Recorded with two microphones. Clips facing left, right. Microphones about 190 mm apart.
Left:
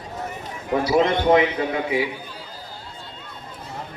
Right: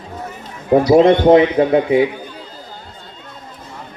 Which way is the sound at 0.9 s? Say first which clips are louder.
Right 8 dB; 45° right (ahead or behind).